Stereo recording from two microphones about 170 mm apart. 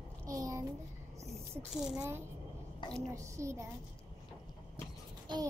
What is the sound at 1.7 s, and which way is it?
Speech, 5° right (ahead or behind).